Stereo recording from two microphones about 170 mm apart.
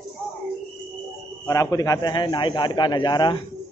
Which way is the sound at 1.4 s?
20° left (ahead or behind).